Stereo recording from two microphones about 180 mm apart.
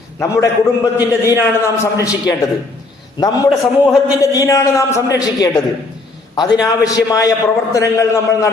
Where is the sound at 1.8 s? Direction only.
20° left (ahead or behind).